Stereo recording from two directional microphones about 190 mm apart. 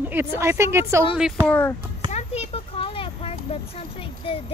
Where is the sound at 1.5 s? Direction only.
10° left (ahead or behind).